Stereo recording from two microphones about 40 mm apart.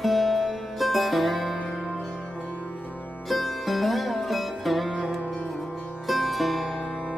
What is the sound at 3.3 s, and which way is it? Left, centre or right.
Music, centre.